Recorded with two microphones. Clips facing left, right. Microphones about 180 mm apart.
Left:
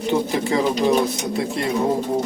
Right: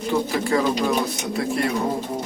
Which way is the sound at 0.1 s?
20° left (ahead or behind).